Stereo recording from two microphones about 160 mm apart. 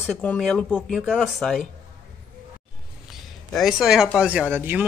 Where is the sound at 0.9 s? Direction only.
5° right (ahead or behind).